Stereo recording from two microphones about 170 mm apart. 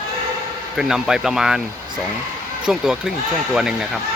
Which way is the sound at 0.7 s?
5° right (ahead or behind).